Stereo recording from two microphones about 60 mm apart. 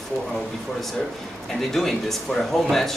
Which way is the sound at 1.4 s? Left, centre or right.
Centre.